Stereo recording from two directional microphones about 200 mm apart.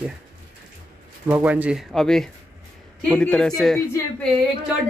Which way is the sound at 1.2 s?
10° right (ahead or behind).